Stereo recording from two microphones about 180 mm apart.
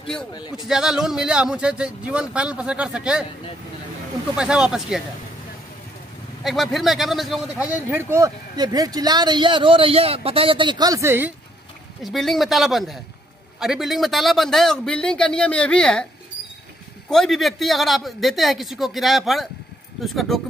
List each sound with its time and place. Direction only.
0.7 s speech: 5° right (ahead or behind)
4.4 s speech: 5° right (ahead or behind)
6.4 s a man's voice: centre (ahead or behind)
12.0 s speech: centre (ahead or behind)
17.1 s speech: centre (ahead or behind)